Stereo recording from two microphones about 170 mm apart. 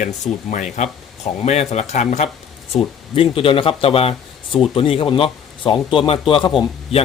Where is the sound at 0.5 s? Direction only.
45° left (ahead or behind).